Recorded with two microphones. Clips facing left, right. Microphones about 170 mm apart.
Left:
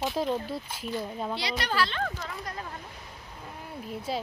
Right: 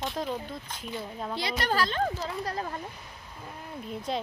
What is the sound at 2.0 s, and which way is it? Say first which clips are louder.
Speech: right 4 dB; 30° right (ahead or behind).